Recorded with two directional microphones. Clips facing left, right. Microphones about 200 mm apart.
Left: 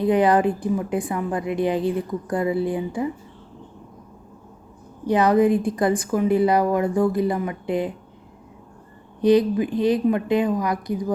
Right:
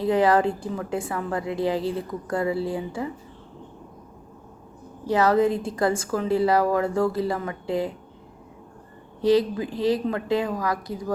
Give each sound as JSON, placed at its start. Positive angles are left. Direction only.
{"t": 0.0, "sound": "a woman's voice", "side_deg": 20}
{"t": 5.0, "sound": "a woman's voice", "side_deg": 20}
{"t": 9.2, "sound": "a woman's voice", "side_deg": 20}